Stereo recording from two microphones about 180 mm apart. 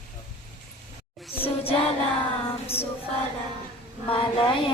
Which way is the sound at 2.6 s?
35° left (ahead or behind).